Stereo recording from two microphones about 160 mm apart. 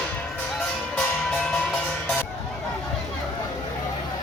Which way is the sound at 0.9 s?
5° left (ahead or behind).